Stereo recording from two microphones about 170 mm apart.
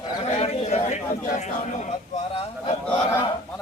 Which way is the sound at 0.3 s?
40° left (ahead or behind).